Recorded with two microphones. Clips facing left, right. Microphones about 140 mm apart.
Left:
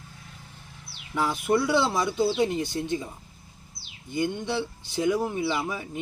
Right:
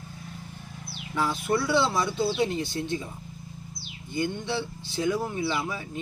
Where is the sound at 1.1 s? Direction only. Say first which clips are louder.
Left 2 dB; 15° left (ahead or behind).